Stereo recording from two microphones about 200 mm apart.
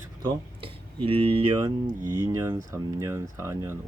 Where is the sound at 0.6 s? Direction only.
25° right (ahead or behind).